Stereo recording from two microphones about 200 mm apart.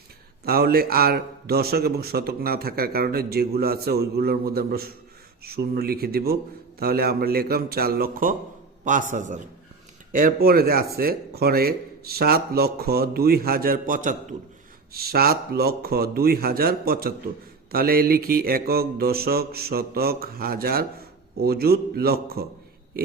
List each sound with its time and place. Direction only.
0.4 s a man's voice: 50° right (ahead or behind)